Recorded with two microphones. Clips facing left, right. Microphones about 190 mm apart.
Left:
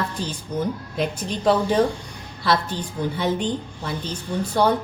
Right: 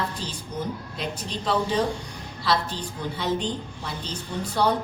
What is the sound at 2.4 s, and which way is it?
Speech, 55° left (ahead or behind).